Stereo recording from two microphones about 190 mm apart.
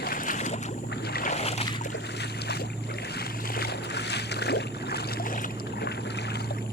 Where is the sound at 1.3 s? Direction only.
35° left (ahead or behind).